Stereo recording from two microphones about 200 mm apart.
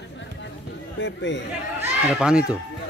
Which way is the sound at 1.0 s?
65° left (ahead or behind).